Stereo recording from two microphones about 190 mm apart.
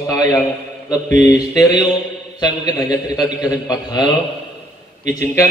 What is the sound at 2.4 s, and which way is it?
Speech, 20° left (ahead or behind).